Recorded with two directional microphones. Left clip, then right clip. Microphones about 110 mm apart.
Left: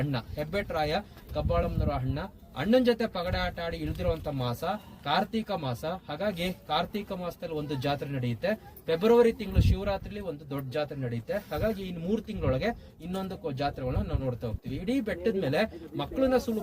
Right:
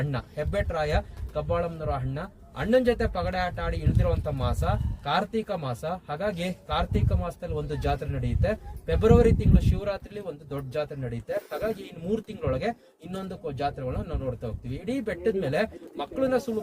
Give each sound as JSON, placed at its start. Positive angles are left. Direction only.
{"t": 0.0, "sound": "speech", "side_deg": -30}